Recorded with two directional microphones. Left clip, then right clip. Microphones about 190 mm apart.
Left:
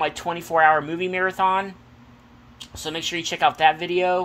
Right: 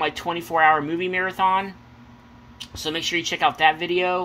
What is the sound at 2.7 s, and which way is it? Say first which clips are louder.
Speech: right 3 dB; 5° left (ahead or behind).